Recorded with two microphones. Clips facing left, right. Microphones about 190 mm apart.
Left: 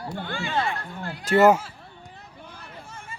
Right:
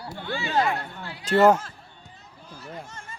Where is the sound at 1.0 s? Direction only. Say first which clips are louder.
Left 4 dB; 50° left (ahead or behind).